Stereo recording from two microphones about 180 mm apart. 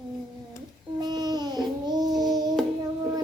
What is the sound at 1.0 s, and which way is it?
Babbling, 25° right (ahead or behind).